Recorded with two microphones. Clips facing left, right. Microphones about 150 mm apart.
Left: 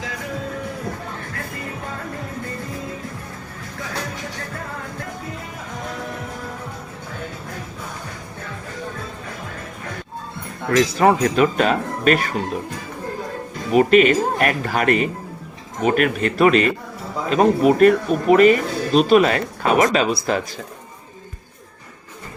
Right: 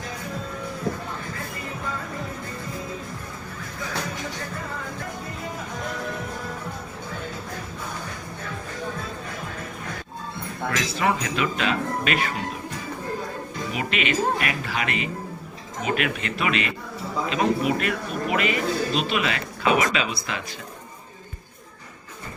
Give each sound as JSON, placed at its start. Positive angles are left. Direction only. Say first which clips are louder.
{"t": 10.7, "sound": "speech", "louder": "left 9 dB", "side_deg": 40}
{"t": 13.7, "sound": "speech", "louder": "left 13 dB", "side_deg": 45}